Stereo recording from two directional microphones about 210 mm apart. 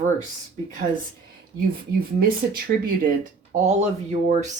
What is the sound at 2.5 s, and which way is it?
Speech, 45° right (ahead or behind).